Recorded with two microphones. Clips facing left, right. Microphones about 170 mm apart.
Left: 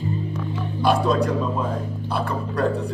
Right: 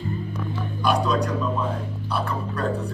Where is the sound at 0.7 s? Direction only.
30° left (ahead or behind).